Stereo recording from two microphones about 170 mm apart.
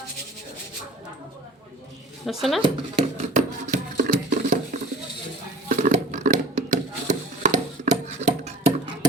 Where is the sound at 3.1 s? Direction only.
45° right (ahead or behind).